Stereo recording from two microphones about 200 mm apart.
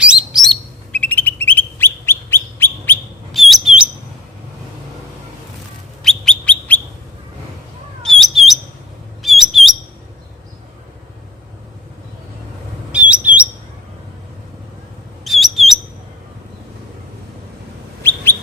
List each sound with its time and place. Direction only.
0.0 s bird: 5° right (ahead or behind); by 3.0 s 10° left (ahead or behind)
3.3 s bird: centre (ahead or behind)
6.0 s bird: 5° left (ahead or behind)
8.0 s bird: centre (ahead or behind)
12.9 s bird: 5° right (ahead or behind)
15.2 s bird: centre (ahead or behind)